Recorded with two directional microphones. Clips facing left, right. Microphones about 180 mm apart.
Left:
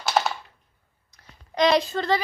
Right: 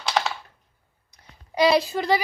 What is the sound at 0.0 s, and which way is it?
Typing, 5° left (ahead or behind).